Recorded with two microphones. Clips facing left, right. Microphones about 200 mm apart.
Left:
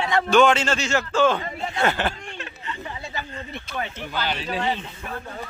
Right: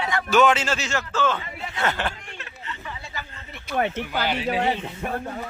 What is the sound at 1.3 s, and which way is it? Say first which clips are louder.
Speech: left 4 dB; 40° left (ahead or behind).